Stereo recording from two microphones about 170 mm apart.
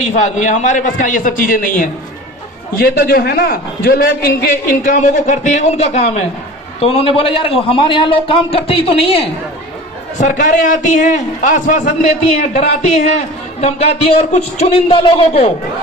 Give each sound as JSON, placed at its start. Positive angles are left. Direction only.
{"t": 0.0, "sound": "a man's voice", "side_deg": 45}
{"t": 10.2, "sound": "a man's voice", "side_deg": 45}